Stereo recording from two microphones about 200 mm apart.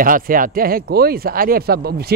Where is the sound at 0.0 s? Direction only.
45° right (ahead or behind).